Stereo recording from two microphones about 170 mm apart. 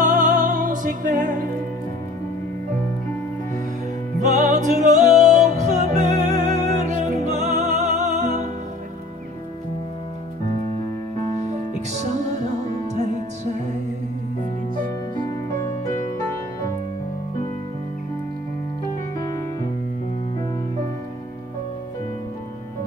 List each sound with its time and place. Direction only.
0.0 s music: 50° right (ahead or behind)
4.3 s music: 45° right (ahead or behind)
11.3 s music: 45° right (ahead or behind)
19.1 s music: 20° left (ahead or behind)